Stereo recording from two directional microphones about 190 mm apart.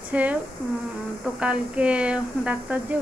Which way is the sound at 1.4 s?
5° right (ahead or behind).